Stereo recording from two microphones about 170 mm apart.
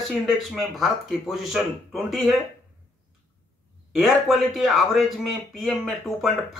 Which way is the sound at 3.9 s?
Centre (ahead or behind).